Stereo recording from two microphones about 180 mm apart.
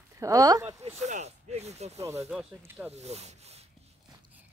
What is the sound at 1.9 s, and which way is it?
Speech, 15° right (ahead or behind).